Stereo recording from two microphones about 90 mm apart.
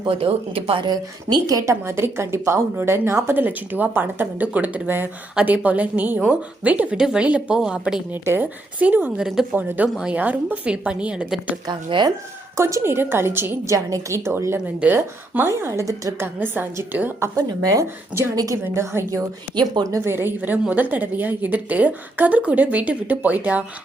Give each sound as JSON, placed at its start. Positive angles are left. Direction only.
{"t": 0.1, "sound": "speech", "side_deg": -90}
{"t": 0.9, "sound": "speech", "side_deg": -45}
{"t": 1.7, "sound": "a woman's voice", "side_deg": -30}
{"t": 8.1, "sound": "a woman's voice", "side_deg": -25}
{"t": 9.2, "sound": "a woman's voice", "side_deg": -5}
{"t": 9.6, "sound": "a woman's voice", "side_deg": -20}
{"t": 11.7, "sound": "speech", "side_deg": -60}
{"t": 12.5, "sound": "a woman's voice", "side_deg": -30}
{"t": 13.7, "sound": "a woman's voice", "side_deg": -40}
{"t": 16.2, "sound": "a woman's voice", "side_deg": -25}
{"t": 20.1, "sound": "a woman's voice", "side_deg": -20}